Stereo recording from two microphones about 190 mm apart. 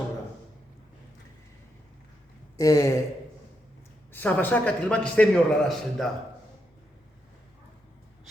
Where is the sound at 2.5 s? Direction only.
15° left (ahead or behind).